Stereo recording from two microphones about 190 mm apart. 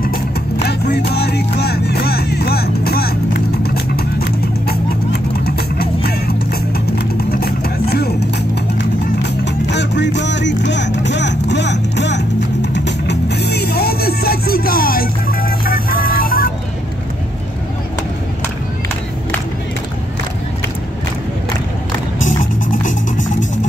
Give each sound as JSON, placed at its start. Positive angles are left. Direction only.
{"t": 0.7, "sound": "music", "side_deg": 60}
{"t": 7.2, "sound": "vehicle", "side_deg": 55}
{"t": 9.4, "sound": "music", "side_deg": 70}
{"t": 22.2, "sound": "music", "side_deg": 40}